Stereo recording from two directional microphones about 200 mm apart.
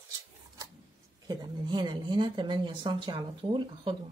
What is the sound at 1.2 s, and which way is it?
Speech, 20° right (ahead or behind).